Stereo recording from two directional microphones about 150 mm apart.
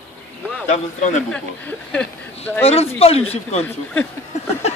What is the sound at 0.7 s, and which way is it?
Speech, 55° left (ahead or behind).